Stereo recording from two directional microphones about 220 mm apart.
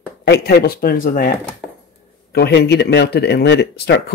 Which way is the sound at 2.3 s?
50° left (ahead or behind).